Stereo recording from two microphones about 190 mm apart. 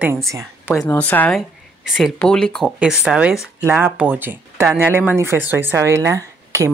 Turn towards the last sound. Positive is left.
turn(degrees=-15)  # may be behind; listen again after turning